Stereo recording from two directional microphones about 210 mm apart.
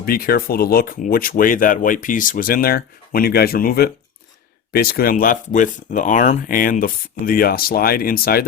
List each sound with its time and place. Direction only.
0.0 s speech: 45° left (ahead or behind)